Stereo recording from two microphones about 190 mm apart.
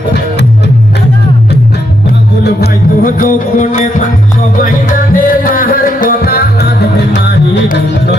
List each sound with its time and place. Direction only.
2.4 s music: 50° left (ahead or behind)
5.1 s music: 45° left (ahead or behind)